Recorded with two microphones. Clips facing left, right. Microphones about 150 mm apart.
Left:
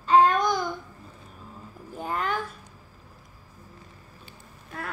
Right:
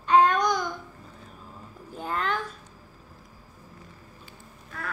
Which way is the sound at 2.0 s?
10° left (ahead or behind).